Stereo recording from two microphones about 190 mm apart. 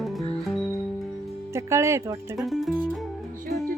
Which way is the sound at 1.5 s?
15° right (ahead or behind).